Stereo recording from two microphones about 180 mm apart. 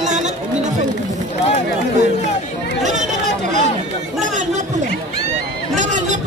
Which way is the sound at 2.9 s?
40° right (ahead or behind).